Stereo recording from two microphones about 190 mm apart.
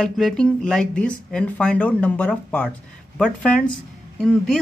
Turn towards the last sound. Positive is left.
turn(degrees=5)  # may be behind; listen again after turning